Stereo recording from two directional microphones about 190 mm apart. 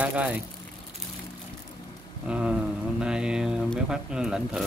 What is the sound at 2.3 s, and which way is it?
Speech, 5° right (ahead or behind).